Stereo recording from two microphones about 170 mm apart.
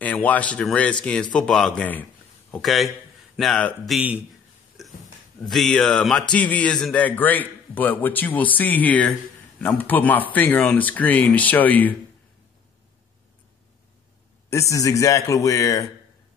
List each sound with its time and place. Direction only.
0.0 s a man's voice: 10° left (ahead or behind)
5.4 s a man's voice: centre (ahead or behind)
14.5 s a man's voice: 20° left (ahead or behind)